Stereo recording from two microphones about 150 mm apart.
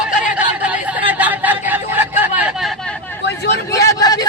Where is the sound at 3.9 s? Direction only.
25° left (ahead or behind).